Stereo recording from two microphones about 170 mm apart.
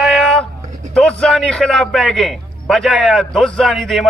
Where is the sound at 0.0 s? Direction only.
Centre (ahead or behind).